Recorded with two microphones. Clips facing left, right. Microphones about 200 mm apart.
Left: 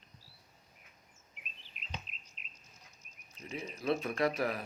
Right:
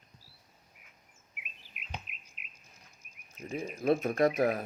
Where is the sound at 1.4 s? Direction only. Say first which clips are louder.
Right 2 dB; 10° right (ahead or behind).